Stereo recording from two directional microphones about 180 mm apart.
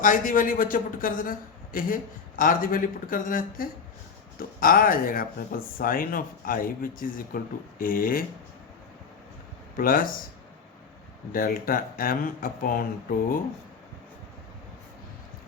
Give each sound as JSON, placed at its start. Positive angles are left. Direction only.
{"t": 0.0, "sound": "speech", "side_deg": 45}
{"t": 9.7, "sound": "speech", "side_deg": 50}
{"t": 11.3, "sound": "speech", "side_deg": 50}